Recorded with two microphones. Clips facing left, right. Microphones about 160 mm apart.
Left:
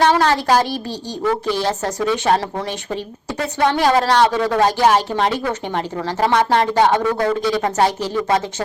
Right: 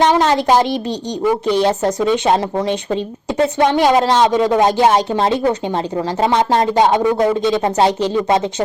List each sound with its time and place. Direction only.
0.0 s speech: 20° right (ahead or behind)